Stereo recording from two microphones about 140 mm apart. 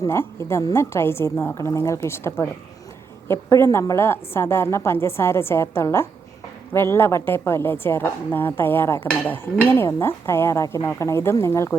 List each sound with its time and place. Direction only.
0.0 s a woman's voice: 20° left (ahead or behind)